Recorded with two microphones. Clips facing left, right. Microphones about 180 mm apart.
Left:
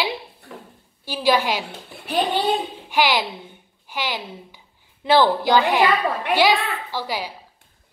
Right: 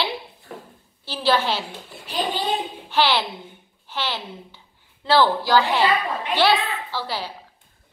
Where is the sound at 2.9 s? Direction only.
10° left (ahead or behind).